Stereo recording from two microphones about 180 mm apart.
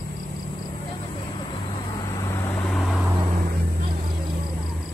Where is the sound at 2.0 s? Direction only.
20° left (ahead or behind).